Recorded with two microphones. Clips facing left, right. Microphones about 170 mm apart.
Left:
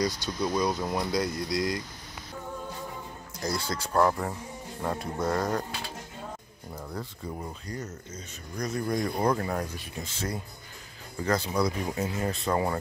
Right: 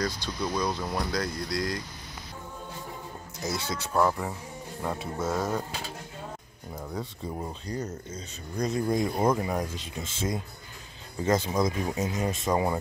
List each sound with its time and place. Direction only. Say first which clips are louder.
0.4 s speech: left 2 dB; 20° left (ahead or behind)
0.7 s speech: left 1 dB; centre (ahead or behind)
1.1 s speech: left 2 dB; 20° left (ahead or behind)
3.6 s speech: left 1 dB; 5° right (ahead or behind)
7.0 s speech: right 3 dB; 20° right (ahead or behind)